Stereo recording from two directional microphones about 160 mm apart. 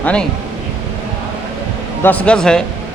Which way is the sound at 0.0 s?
5° left (ahead or behind).